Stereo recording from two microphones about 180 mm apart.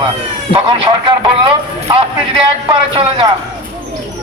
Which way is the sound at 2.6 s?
30° right (ahead or behind).